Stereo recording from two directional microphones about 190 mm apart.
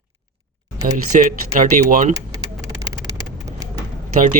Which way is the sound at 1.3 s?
45° right (ahead or behind).